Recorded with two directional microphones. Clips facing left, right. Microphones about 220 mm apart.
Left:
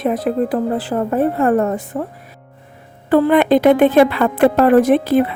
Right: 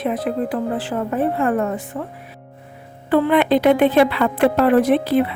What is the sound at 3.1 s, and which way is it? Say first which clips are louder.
A woman's voice: left 3 dB; 45° left (ahead or behind).